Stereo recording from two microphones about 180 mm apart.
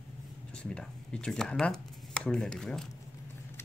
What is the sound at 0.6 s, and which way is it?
Speech, 5° left (ahead or behind).